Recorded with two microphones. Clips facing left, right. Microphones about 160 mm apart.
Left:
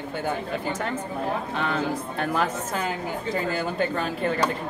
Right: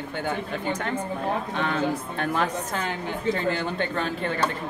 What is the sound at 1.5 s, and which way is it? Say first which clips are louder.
A woman's voice: right 1 dB; centre (ahead or behind).